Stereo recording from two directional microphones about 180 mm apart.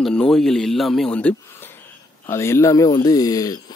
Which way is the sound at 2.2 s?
15° left (ahead or behind).